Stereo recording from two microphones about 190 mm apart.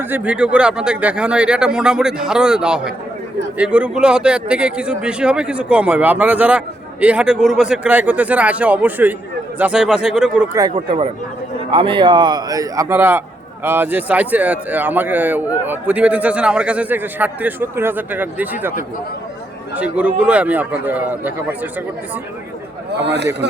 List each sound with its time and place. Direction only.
0.0 s a man's voice: 10° right (ahead or behind)
10.5 s a man's voice: 20° right (ahead or behind)
19.7 s a man's voice: 5° right (ahead or behind)
22.9 s a man's voice: 65° right (ahead or behind)